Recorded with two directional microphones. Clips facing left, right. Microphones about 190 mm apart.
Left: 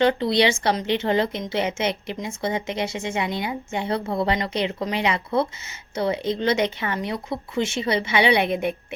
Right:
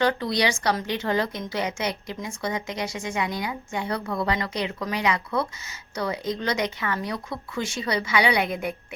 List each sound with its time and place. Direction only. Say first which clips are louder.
0.0 s speech: left 4 dB; 25° left (ahead or behind)